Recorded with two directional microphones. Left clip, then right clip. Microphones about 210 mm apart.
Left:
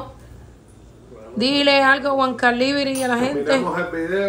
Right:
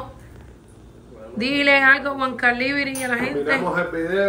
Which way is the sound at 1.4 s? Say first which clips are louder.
Left 1 dB; 10° left (ahead or behind).